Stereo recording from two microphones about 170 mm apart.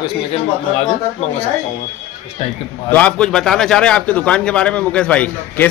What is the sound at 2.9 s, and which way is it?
A man's voice, 5° left (ahead or behind).